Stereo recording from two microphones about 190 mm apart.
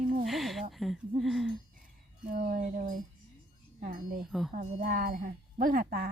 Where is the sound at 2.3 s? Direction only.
45° right (ahead or behind).